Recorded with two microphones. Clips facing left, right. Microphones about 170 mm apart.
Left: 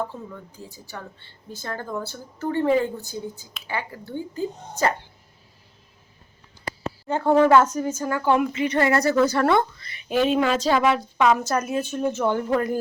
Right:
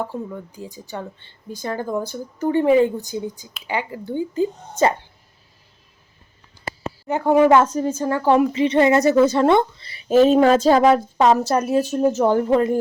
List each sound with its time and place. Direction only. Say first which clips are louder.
0.1 s speech: right 8 dB; 15° right (ahead or behind)
6.8 s a woman's voice: right 2 dB; 15° right (ahead or behind)
7.6 s a woman's voice: right 4 dB; 30° right (ahead or behind)
12.5 s speech: right 5 dB; 25° right (ahead or behind)